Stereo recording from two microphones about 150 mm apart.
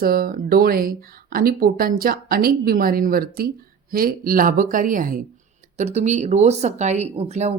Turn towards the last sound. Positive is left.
turn(degrees=-45)  # may be behind; listen again after turning